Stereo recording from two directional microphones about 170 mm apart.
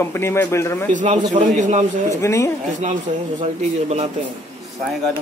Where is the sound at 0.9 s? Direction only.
45° right (ahead or behind).